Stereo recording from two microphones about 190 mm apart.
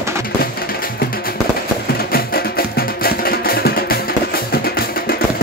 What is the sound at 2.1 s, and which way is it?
Music, 50° left (ahead or behind).